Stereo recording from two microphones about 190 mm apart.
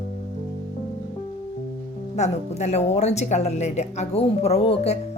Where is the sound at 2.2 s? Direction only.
35° left (ahead or behind).